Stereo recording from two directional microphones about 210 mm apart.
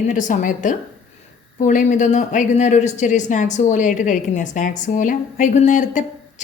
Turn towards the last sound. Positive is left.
turn(degrees=35)  # may be behind; listen again after turning